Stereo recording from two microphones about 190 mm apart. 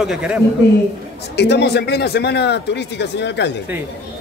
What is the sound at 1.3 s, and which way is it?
Speech, 65° left (ahead or behind).